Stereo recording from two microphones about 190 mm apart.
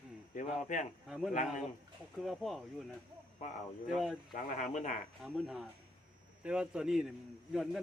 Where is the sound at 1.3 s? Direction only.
40° left (ahead or behind).